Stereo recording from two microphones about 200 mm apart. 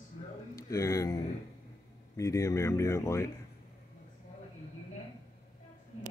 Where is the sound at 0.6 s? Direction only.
15° left (ahead or behind).